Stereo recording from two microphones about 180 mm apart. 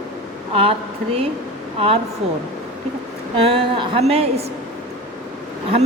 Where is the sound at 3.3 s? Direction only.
30° right (ahead or behind).